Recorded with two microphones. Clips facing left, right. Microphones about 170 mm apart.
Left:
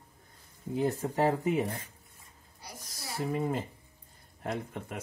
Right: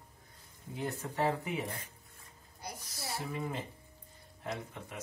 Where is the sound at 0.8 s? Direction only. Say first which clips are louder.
Left 5 dB; 40° left (ahead or behind).